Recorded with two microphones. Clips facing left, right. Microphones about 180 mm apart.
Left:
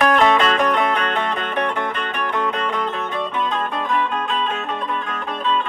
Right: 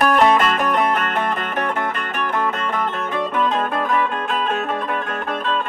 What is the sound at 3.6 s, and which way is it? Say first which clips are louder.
Music: right 2 dB; 55° right (ahead or behind).